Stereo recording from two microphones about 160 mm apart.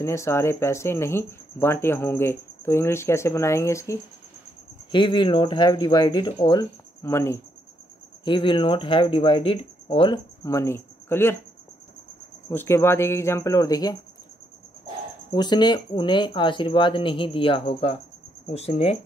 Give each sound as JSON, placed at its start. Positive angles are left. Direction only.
{"t": 0.0, "sound": "speech", "side_deg": 15}
{"t": 4.9, "sound": "speech", "side_deg": 30}
{"t": 8.3, "sound": "speech", "side_deg": 30}
{"t": 10.4, "sound": "speech", "side_deg": 20}
{"t": 12.4, "sound": "speech", "side_deg": 15}
{"t": 15.3, "sound": "speech", "side_deg": 25}